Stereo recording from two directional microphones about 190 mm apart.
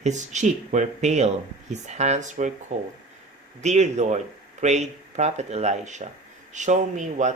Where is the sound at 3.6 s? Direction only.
35° right (ahead or behind).